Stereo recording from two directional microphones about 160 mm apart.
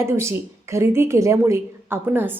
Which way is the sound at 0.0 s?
15° right (ahead or behind).